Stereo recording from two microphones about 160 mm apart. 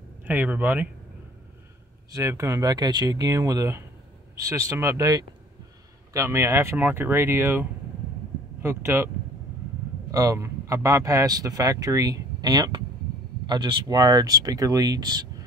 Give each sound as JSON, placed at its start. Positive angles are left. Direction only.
{"t": 0.2, "sound": "speech", "side_deg": -10}
{"t": 2.1, "sound": "speech", "side_deg": -20}
{"t": 8.6, "sound": "speech", "side_deg": -15}
{"t": 10.1, "sound": "speech", "side_deg": -20}